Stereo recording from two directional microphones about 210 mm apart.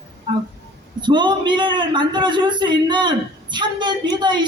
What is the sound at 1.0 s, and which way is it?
A man's voice, 20° right (ahead or behind).